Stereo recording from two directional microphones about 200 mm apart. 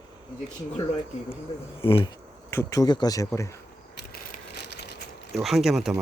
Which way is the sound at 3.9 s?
50° left (ahead or behind).